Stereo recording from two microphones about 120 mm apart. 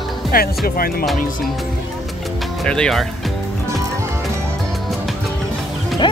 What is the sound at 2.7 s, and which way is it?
Speech, 5° left (ahead or behind).